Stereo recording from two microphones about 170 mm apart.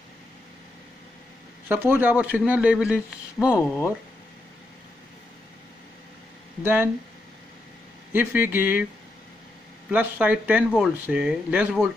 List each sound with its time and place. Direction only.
1.7 s speech: 10° right (ahead or behind)
3.5 s speech: 15° left (ahead or behind)
6.6 s speech: 10° right (ahead or behind)
8.1 s speech: 10° right (ahead or behind)
9.8 s speech: 10° right (ahead or behind)